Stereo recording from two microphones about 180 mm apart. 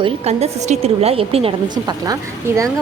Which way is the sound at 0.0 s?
35° right (ahead or behind).